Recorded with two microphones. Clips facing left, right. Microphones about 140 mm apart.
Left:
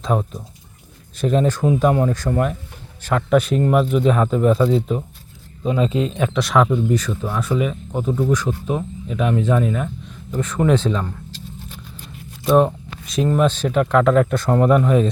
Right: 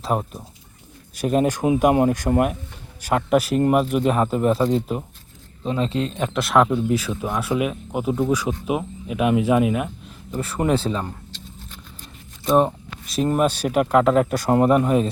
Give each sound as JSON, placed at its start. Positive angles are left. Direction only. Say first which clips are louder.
{"t": 0.0, "sound": "speech", "louder": "left 2 dB", "side_deg": -5}
{"t": 5.6, "sound": "speech", "louder": "left 3 dB", "side_deg": 5}
{"t": 10.7, "sound": "speech", "louder": "left 2 dB", "side_deg": -35}
{"t": 12.5, "sound": "a sound", "louder": "left 3 dB", "side_deg": 0}
{"t": 13.2, "sound": "speech", "louder": "left 2 dB", "side_deg": -15}